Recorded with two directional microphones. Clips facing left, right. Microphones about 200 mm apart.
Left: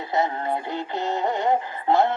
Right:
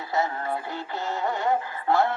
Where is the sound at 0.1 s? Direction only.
20° left (ahead or behind).